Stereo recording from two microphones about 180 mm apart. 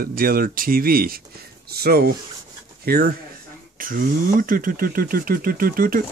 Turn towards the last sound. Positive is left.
turn(degrees=-50)  # may be behind; listen again after turning